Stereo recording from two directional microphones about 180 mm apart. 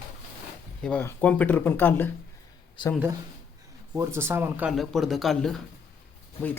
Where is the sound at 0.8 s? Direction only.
5° left (ahead or behind).